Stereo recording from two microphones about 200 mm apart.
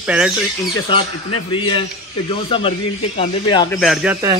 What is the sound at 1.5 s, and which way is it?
A man's voice, 25° left (ahead or behind).